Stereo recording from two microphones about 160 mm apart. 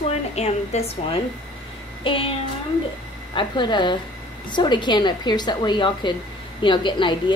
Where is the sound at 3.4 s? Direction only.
30° left (ahead or behind).